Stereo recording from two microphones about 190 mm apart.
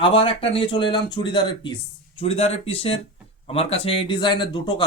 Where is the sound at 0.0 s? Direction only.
30° left (ahead or behind).